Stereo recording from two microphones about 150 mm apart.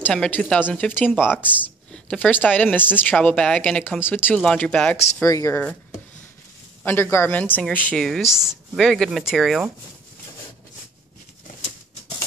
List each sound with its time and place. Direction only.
0.0 s speech: 10° left (ahead or behind)
5.2 s speech: 20° left (ahead or behind)
6.8 s speech: 15° left (ahead or behind)